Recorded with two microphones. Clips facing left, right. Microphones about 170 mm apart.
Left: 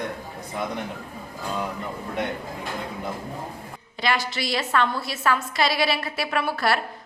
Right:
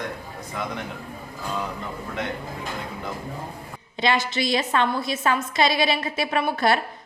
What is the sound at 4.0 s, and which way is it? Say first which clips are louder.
A woman's voice: right 3 dB; 20° right (ahead or behind).